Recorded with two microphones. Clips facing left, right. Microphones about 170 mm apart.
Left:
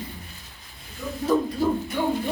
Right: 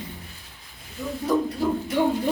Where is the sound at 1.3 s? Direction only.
15° right (ahead or behind).